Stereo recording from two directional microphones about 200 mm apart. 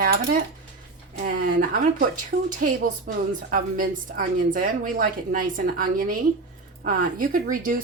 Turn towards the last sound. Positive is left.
turn(degrees=-45)  # may be behind; listen again after turning